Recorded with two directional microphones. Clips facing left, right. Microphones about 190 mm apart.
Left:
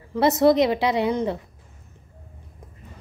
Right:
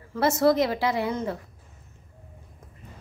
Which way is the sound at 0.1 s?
20° left (ahead or behind).